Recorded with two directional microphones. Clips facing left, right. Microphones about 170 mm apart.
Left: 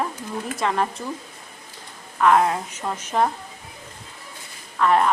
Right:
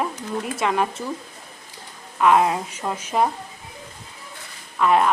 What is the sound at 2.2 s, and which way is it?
A woman's voice, 15° right (ahead or behind).